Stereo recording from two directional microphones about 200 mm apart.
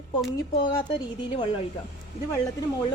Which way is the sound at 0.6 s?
25° left (ahead or behind).